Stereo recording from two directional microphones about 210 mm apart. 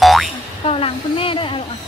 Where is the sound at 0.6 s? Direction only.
25° left (ahead or behind).